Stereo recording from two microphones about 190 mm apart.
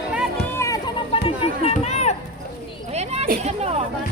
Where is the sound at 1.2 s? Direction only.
30° left (ahead or behind).